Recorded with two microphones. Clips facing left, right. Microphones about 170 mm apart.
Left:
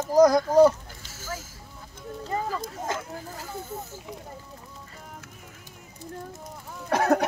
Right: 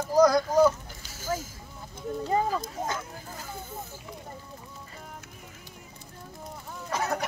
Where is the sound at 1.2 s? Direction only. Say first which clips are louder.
Right 6 dB; 15° right (ahead or behind).